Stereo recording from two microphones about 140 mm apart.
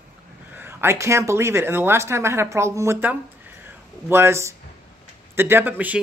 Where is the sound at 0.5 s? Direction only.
15° right (ahead or behind).